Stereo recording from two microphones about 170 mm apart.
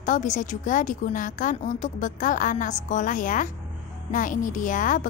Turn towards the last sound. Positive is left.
turn(degrees=50)  # may be behind; listen again after turning